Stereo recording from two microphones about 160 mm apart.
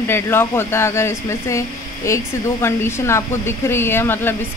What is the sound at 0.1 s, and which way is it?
Speech, 15° left (ahead or behind).